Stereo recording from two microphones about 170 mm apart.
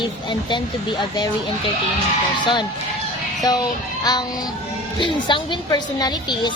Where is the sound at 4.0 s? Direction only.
25° left (ahead or behind).